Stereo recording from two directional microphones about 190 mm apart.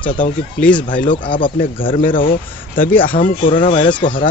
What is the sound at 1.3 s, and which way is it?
Speech, 25° left (ahead or behind).